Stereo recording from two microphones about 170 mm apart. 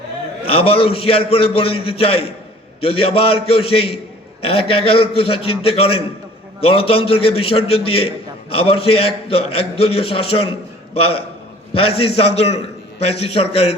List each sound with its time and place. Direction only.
0.4 s a man's voice: 35° left (ahead or behind)